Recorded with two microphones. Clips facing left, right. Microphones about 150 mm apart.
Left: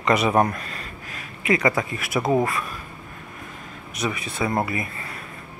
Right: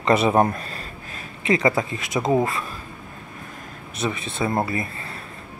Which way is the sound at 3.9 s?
25° right (ahead or behind).